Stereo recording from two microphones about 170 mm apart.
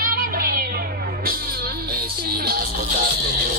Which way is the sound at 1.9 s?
65° right (ahead or behind).